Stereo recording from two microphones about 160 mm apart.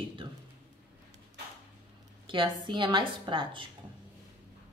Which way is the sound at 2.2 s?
30° right (ahead or behind).